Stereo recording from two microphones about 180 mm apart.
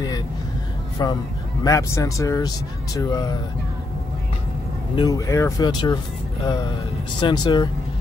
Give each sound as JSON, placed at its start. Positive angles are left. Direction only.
{"t": 1.0, "sound": "speech", "side_deg": 20}
{"t": 4.9, "sound": "speech", "side_deg": 20}
{"t": 7.2, "sound": "speech", "side_deg": 25}